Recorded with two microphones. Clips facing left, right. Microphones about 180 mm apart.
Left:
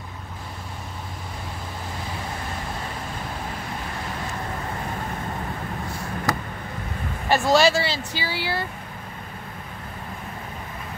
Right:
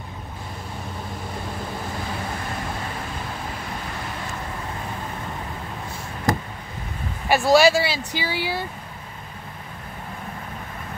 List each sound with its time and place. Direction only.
7.2 s speech: 10° right (ahead or behind)